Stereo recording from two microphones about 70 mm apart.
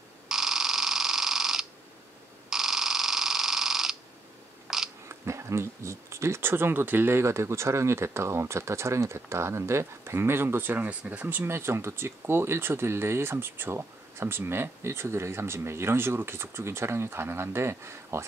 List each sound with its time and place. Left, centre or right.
0.3 s pulse: centre
4.7 s a sound: centre
5.0 s speech: right